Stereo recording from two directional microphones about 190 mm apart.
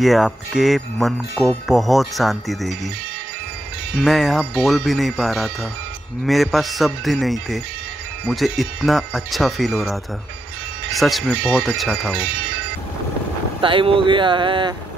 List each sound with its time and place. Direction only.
0.0 s speech: centre (ahead or behind)
4.0 s speech: centre (ahead or behind)
13.6 s speech: 25° right (ahead or behind)